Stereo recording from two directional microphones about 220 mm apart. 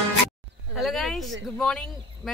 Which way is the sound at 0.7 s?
Centre (ahead or behind).